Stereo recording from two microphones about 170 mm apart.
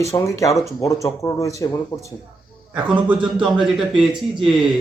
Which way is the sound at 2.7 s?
10° right (ahead or behind).